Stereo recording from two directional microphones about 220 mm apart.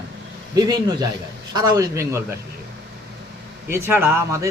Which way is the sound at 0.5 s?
20° right (ahead or behind).